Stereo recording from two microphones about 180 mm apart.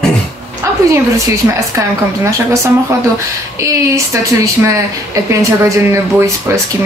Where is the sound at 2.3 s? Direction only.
15° right (ahead or behind).